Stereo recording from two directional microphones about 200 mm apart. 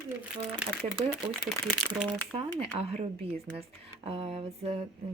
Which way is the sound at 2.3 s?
30° right (ahead or behind).